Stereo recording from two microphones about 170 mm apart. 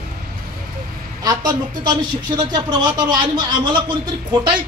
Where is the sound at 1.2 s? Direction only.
25° right (ahead or behind).